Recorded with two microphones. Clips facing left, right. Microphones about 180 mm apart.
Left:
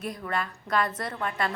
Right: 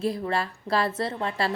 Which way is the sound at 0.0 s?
30° right (ahead or behind).